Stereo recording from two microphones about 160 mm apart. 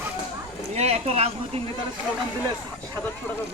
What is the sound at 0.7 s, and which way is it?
Speech, 40° right (ahead or behind).